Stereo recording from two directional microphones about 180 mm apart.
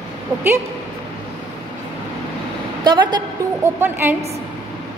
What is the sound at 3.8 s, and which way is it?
Speech, 10° right (ahead or behind).